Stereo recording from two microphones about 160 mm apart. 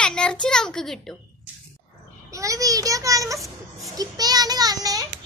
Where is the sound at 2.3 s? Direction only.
20° right (ahead or behind).